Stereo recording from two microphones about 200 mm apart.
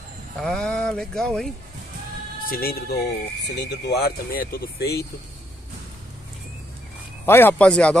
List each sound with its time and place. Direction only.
0.4 s speech: 5° left (ahead or behind)
2.5 s speech: 50° left (ahead or behind)
7.2 s a man's voice: 10° left (ahead or behind)